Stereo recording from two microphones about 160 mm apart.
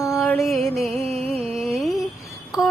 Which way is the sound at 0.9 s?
40° right (ahead or behind).